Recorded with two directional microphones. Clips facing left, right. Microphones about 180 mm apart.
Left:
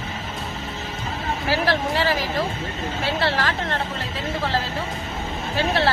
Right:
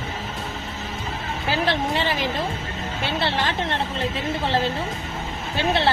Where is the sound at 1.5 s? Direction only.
20° right (ahead or behind).